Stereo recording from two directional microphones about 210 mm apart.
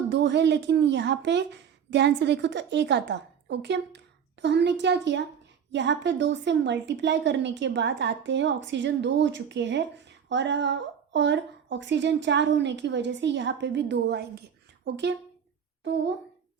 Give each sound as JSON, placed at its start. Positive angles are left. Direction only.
{"t": 0.1, "sound": "a woman's voice", "side_deg": -55}